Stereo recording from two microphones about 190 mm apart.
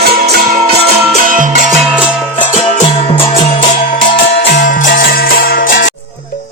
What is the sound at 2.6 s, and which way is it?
Music, 30° left (ahead or behind).